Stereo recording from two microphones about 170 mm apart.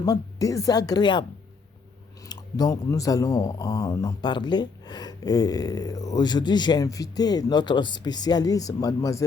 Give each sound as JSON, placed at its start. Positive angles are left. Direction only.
{"t": 0.0, "sound": "speech", "side_deg": 20}
{"t": 2.2, "sound": "speech", "side_deg": 20}